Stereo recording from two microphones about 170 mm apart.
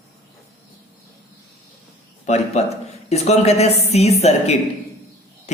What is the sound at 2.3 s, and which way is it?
A man's voice, 40° left (ahead or behind).